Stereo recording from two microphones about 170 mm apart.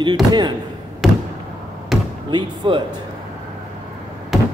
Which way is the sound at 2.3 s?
25° right (ahead or behind).